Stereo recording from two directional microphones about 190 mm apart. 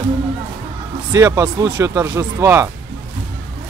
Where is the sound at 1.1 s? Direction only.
15° right (ahead or behind).